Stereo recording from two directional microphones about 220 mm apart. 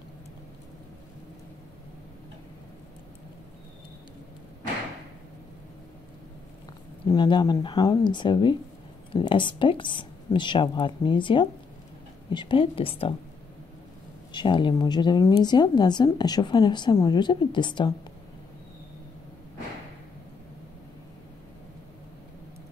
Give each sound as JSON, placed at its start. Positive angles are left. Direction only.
{"t": 7.1, "sound": "a woman's voice", "side_deg": 20}
{"t": 14.3, "sound": "a woman's voice", "side_deg": 20}